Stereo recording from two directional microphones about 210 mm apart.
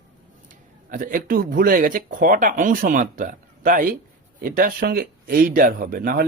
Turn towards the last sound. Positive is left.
turn(degrees=-45)  # may be behind; listen again after turning